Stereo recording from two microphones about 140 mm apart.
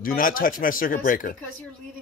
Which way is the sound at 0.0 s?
90° left.